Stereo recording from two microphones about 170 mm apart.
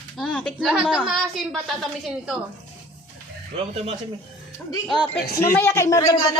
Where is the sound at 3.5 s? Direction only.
35° right (ahead or behind).